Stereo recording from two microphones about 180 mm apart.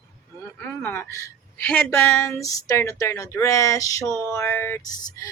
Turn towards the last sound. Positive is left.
turn(degrees=15)  # may be behind; listen again after turning